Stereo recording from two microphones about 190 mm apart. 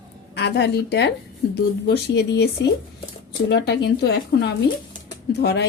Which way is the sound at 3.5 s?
65° left (ahead or behind).